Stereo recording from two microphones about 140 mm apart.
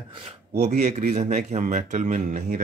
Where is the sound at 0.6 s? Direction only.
55° right (ahead or behind).